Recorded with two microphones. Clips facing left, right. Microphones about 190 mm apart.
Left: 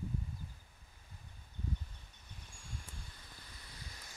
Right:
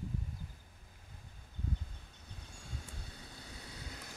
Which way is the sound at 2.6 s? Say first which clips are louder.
Right 2 dB; 70° right (ahead or behind).